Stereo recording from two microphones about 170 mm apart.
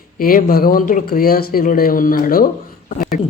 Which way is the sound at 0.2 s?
55° left (ahead or behind).